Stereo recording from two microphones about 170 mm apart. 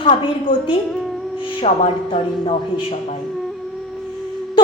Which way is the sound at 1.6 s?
40° left (ahead or behind).